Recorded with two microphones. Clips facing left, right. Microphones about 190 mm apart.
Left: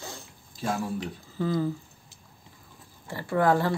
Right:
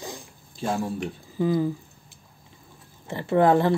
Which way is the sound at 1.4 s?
15° right (ahead or behind).